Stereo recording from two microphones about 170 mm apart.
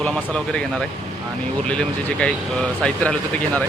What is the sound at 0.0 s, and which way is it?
Speech, 5° left (ahead or behind).